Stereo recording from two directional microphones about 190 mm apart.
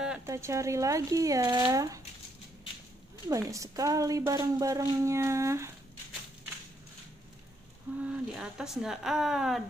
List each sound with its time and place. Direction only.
0.3 s a woman's voice: 15° right (ahead or behind)
3.3 s a woman's voice: 15° right (ahead or behind)
8.0 s speech: 5° right (ahead or behind)